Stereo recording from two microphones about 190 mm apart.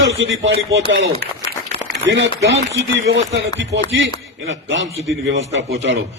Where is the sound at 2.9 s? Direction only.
70° right (ahead or behind).